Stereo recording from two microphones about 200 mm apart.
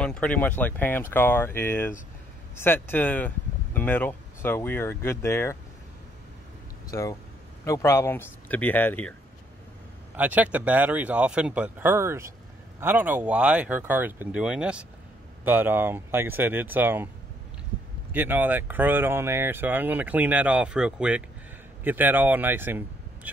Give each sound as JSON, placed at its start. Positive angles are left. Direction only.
{"t": 0.0, "sound": "speech", "side_deg": 5}
{"t": 6.9, "sound": "speech", "side_deg": 15}
{"t": 10.1, "sound": "speech", "side_deg": -10}
{"t": 18.1, "sound": "speech", "side_deg": -10}